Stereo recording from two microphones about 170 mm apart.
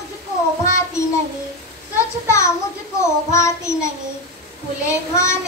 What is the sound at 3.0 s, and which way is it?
Child singing, 15° left (ahead or behind).